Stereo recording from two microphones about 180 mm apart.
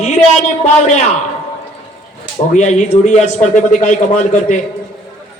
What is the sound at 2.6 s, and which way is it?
A man's voice, 40° left (ahead or behind).